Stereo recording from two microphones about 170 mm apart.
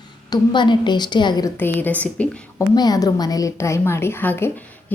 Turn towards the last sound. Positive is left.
turn(degrees=10)  # may be behind; listen again after turning